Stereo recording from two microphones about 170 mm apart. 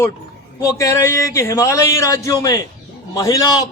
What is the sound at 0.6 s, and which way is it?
A man's voice, 20° left (ahead or behind).